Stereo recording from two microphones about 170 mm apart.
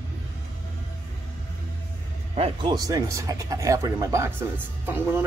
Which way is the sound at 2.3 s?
30° right (ahead or behind).